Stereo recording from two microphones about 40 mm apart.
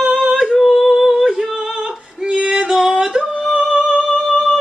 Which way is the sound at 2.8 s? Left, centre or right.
Centre.